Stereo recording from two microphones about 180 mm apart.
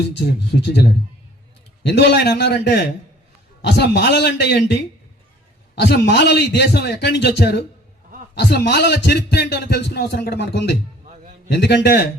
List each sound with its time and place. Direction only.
0.3 s a man's voice: 65° left (ahead or behind)